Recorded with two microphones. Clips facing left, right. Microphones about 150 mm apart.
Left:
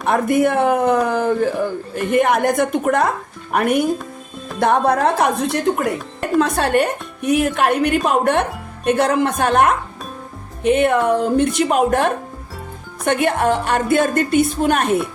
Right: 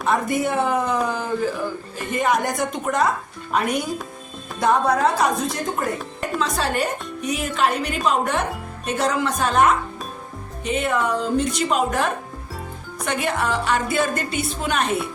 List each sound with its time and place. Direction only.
0.0 s a woman's voice: 60° left (ahead or behind)